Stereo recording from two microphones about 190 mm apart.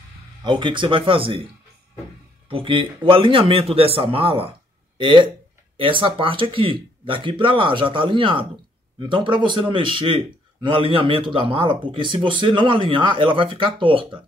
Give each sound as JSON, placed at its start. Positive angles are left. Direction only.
{"t": 0.4, "sound": "a man's voice", "side_deg": -25}
{"t": 2.5, "sound": "a man's voice", "side_deg": -25}